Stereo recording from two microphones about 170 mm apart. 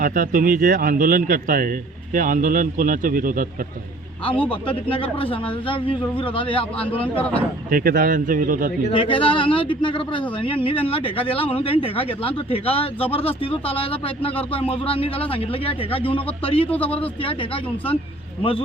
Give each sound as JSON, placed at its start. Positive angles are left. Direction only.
{"t": 0.0, "sound": "a man's voice", "side_deg": -55}
{"t": 4.4, "sound": "speech", "side_deg": 30}
{"t": 7.0, "sound": "speech", "side_deg": 10}
{"t": 7.7, "sound": "a man's voice", "side_deg": -55}
{"t": 8.9, "sound": "a man's voice", "side_deg": 30}
{"t": 16.6, "sound": "speech", "side_deg": 10}
{"t": 17.2, "sound": "speech", "side_deg": 30}